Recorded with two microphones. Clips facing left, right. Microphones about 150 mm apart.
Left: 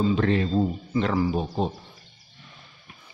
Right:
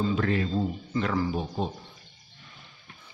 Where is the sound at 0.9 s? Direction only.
25° left (ahead or behind).